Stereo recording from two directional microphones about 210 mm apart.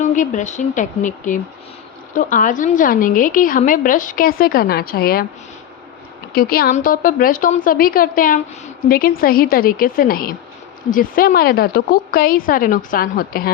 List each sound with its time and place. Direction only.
0.0 s a woman's voice: 35° left (ahead or behind)
6.3 s speech: 45° left (ahead or behind)